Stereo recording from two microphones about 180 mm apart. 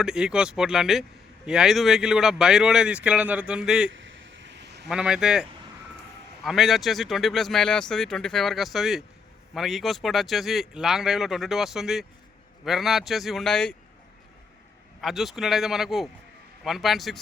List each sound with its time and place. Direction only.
0.0 s speech: 5° right (ahead or behind)
3.9 s a sound: 90° right; by 4.9 s 70° right (ahead or behind)
4.9 s speech: 5° right (ahead or behind)
15.0 s speech: centre (ahead or behind)